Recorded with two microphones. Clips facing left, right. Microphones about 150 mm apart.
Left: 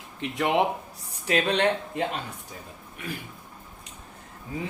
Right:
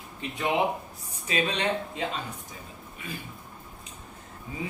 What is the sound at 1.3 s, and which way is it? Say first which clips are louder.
Speech: left 4 dB; 65° left (ahead or behind).